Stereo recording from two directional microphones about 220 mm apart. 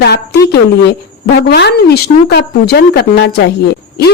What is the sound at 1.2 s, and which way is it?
A woman's voice, 45° left (ahead or behind).